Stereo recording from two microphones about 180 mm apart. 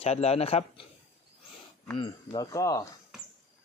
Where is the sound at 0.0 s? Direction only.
35° left (ahead or behind).